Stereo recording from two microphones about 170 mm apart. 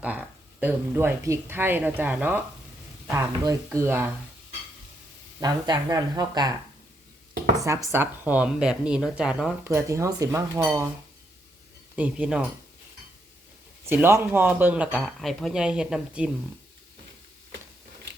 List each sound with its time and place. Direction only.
0.0 s speech: 10° right (ahead or behind)
5.4 s speech: 25° right (ahead or behind)
7.9 s speech: 10° right (ahead or behind)
9.6 s speech: 15° right (ahead or behind)
11.9 s speech: 5° right (ahead or behind)
13.8 s speech: 15° right (ahead or behind)